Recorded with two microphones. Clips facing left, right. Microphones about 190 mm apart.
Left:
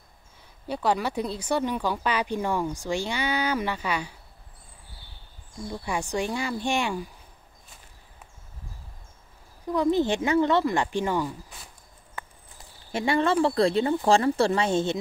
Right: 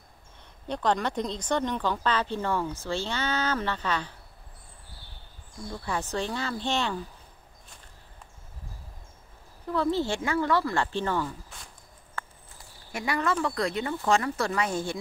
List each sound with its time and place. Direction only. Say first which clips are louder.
0.4 s speech: left 1 dB; 10° left (ahead or behind)
5.7 s speech: left 2 dB; 15° left (ahead or behind)
9.7 s speech: left 4 dB; 15° left (ahead or behind)
12.2 s a sound: right 1 dB; 15° left (ahead or behind)
12.9 s speech: left 5 dB; 25° left (ahead or behind)